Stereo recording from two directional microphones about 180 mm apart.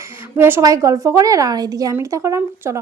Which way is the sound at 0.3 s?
15° right (ahead or behind).